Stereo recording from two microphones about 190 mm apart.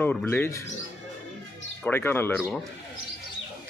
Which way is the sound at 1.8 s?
10° left (ahead or behind).